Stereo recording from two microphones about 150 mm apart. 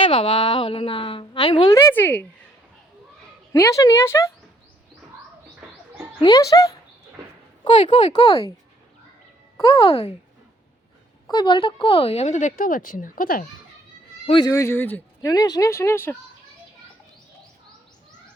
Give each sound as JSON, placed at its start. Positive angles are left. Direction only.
{"t": 0.0, "sound": "a woman's voice", "side_deg": 35}
{"t": 1.7, "sound": "speech", "side_deg": 15}
{"t": 3.5, "sound": "speech", "side_deg": 20}
{"t": 6.2, "sound": "speech", "side_deg": 25}
{"t": 7.6, "sound": "a woman's voice", "side_deg": 30}
{"t": 9.6, "sound": "speech", "side_deg": 30}
{"t": 11.3, "sound": "speech", "side_deg": 30}
{"t": 14.3, "sound": "a woman's voice", "side_deg": 30}
{"t": 14.5, "sound": "speech", "side_deg": 15}
{"t": 15.3, "sound": "speech", "side_deg": 25}